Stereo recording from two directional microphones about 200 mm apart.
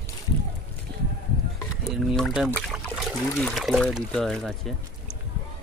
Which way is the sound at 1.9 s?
Centre (ahead or behind).